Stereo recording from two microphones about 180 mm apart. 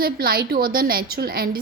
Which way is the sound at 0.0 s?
55° right (ahead or behind).